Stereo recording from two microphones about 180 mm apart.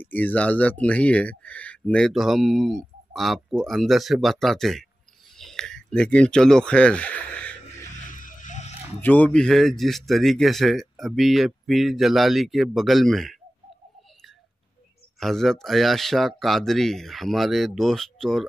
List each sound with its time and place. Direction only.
0.0 s speech: 10° left (ahead or behind)
8.1 s music: 45° left (ahead or behind)
9.0 s speech: 10° left (ahead or behind)
15.1 s speech: centre (ahead or behind)